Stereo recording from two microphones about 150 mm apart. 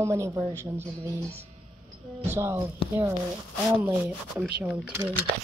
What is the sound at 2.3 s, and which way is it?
Speech, 15° right (ahead or behind).